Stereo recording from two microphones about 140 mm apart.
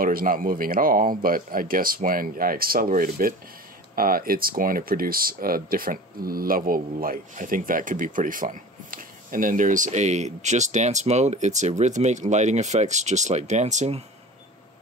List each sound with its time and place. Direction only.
0.0 s speech: 90° right; by 14.0 s 55° right (ahead or behind)